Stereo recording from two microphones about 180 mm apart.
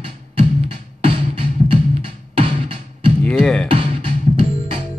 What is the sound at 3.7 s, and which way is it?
Music, 30° right (ahead or behind).